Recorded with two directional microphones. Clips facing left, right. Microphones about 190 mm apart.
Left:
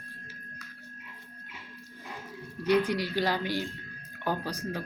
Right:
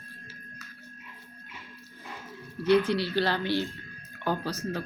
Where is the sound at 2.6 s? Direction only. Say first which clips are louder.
Right 3 dB; 10° left (ahead or behind).